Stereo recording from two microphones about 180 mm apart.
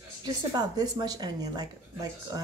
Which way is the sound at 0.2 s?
20° right (ahead or behind).